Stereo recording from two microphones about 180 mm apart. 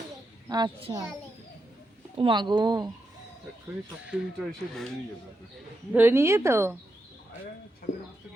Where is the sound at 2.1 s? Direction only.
30° right (ahead or behind).